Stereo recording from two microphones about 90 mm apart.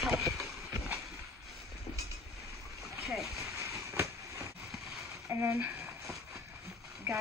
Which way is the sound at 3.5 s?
35° right (ahead or behind).